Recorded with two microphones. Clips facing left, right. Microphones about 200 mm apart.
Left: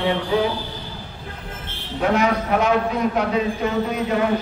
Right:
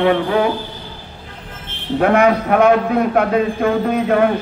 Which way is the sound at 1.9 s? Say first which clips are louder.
Right 6 dB; 60° right (ahead or behind).